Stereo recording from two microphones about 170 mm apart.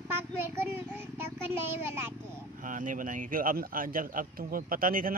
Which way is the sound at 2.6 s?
50° right (ahead or behind).